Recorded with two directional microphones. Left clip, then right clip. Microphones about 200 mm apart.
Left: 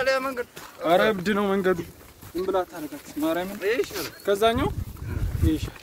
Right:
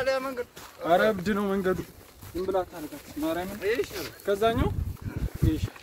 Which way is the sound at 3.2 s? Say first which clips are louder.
Left 3 dB; 35° left (ahead or behind).